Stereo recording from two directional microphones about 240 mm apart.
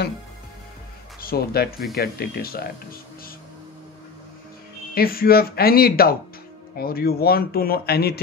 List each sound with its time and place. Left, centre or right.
1.2 s speech: left
4.9 s speech: left